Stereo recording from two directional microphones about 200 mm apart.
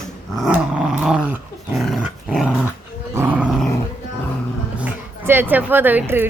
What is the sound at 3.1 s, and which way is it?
Roar, 10° right (ahead or behind).